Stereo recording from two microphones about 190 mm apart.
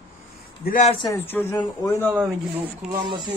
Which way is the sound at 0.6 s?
45° left (ahead or behind).